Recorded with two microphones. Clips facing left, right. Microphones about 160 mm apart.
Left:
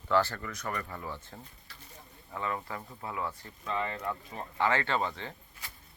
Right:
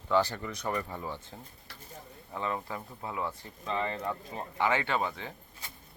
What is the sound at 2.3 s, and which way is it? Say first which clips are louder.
Speech: right 1 dB; 20° right (ahead or behind).